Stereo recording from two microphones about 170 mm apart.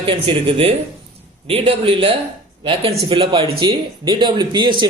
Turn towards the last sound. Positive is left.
turn(degrees=-25)  # may be behind; listen again after turning